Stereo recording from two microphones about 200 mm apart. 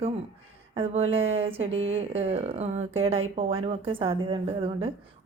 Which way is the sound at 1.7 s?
75° right (ahead or behind).